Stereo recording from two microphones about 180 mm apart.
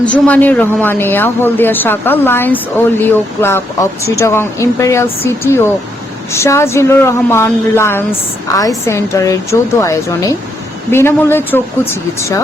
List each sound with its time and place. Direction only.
0.0 s speech: 10° left (ahead or behind)